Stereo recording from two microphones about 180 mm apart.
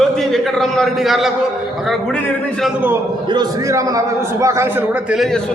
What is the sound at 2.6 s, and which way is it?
Speech, 10° right (ahead or behind).